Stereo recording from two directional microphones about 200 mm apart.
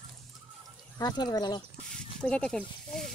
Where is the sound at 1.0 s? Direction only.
20° left (ahead or behind).